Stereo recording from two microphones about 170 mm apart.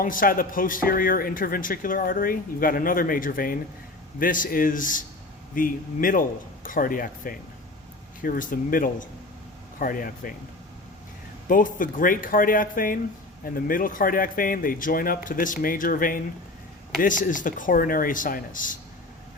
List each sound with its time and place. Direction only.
0.0 s speech: 55° left (ahead or behind)
11.4 s speech: 50° left (ahead or behind)